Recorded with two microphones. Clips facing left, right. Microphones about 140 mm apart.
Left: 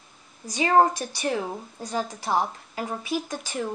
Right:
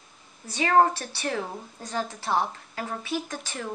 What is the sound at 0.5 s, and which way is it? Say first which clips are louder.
A woman's voice: left 1 dB; 10° left (ahead or behind).